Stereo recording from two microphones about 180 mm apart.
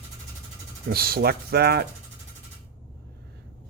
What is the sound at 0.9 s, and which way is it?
Speech, 55° right (ahead or behind).